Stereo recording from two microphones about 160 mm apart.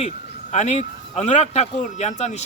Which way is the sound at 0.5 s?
45° left (ahead or behind).